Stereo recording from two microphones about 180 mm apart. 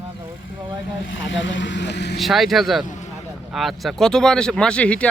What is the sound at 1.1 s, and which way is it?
Speech, 90° left.